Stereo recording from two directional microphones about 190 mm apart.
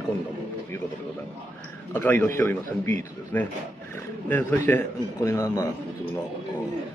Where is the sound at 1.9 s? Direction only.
10° left (ahead or behind).